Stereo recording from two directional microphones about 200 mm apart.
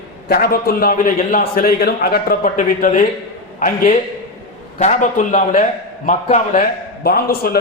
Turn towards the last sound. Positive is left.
turn(degrees=50)  # may be behind; listen again after turning